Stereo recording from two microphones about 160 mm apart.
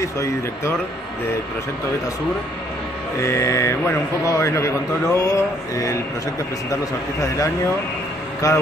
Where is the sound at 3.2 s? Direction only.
15° left (ahead or behind).